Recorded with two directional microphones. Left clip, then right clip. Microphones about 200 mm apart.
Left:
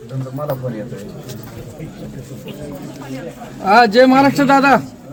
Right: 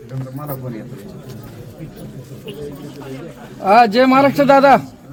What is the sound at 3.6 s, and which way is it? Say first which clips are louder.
A man's voice: left 1 dB; 25° right (ahead or behind).